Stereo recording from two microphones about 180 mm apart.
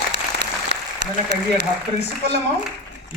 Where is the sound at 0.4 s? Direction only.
70° right (ahead or behind).